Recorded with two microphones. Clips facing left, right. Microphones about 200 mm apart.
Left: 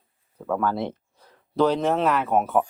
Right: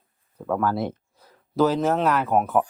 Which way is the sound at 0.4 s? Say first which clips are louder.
Right 1 dB; 5° right (ahead or behind).